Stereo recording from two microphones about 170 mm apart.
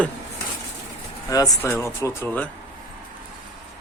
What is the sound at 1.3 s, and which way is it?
Speech, 20° left (ahead or behind).